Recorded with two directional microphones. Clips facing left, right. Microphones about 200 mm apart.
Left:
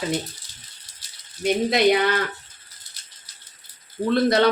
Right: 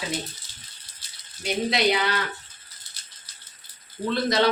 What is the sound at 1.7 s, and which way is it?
Speech, 50° left (ahead or behind).